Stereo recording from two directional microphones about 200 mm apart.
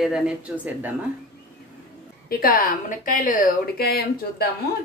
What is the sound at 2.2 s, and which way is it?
Speech, 45° left (ahead or behind).